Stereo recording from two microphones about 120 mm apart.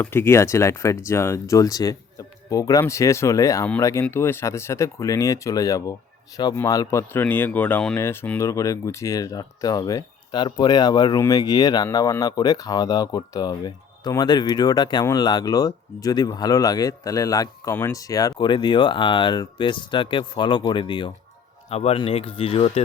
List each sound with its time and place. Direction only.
0.0 s speech: 20° left (ahead or behind)
7.1 s speech: 15° left (ahead or behind); by 21.1 s 40° left (ahead or behind)
21.7 s speech: 55° left (ahead or behind)